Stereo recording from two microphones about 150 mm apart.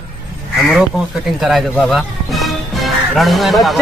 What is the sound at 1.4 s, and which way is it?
Speech, centre (ahead or behind).